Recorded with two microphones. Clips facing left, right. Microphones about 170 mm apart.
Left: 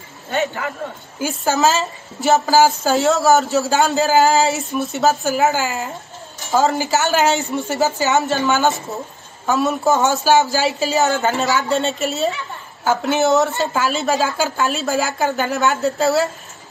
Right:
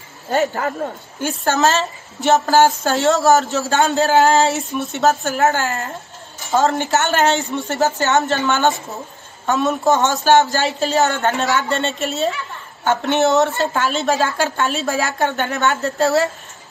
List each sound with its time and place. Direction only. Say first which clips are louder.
0.3 s speech: right 3 dB; 40° right (ahead or behind)
1.2 s a woman's voice: even; centre (ahead or behind)